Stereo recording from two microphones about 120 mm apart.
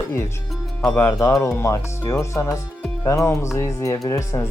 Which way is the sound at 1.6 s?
25° left (ahead or behind).